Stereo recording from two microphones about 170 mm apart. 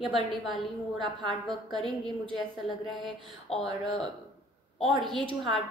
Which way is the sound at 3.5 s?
35° left (ahead or behind).